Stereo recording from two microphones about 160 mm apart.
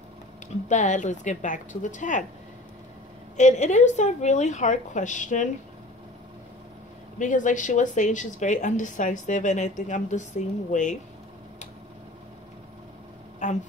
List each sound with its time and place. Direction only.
0.7 s speech: 50° left (ahead or behind)
3.3 s speech: 45° left (ahead or behind)
7.2 s speech: 50° left (ahead or behind)
13.4 s a sound: 50° left (ahead or behind)